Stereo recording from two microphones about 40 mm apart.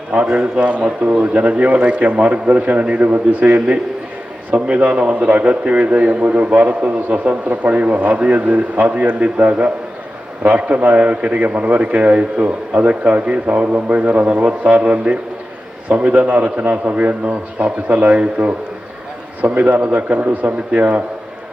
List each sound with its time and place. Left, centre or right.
0.1 s a man's voice: right
4.5 s a man's voice: right
11.0 s a man's voice: right
11.3 s a man's voice: right